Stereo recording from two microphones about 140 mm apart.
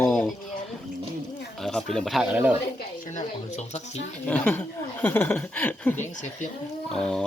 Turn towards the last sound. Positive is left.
turn(degrees=5)  # may be behind; listen again after turning